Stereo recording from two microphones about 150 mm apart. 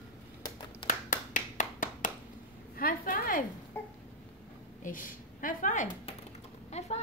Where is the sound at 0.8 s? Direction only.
60° left (ahead or behind).